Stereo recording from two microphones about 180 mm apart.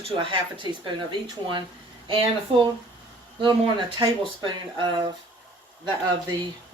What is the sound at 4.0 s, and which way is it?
Speech, 25° right (ahead or behind).